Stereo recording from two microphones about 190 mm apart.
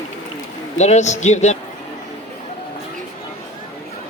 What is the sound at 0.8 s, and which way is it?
Speech, 35° left (ahead or behind).